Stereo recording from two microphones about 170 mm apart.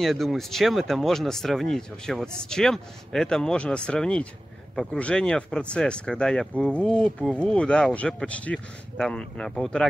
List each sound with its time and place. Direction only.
0.0 s speech: centre (ahead or behind)